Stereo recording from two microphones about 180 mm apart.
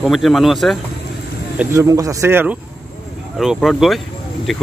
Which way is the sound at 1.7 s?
20° right (ahead or behind).